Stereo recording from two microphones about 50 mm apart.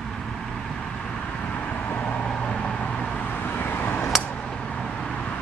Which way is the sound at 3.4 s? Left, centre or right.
Left.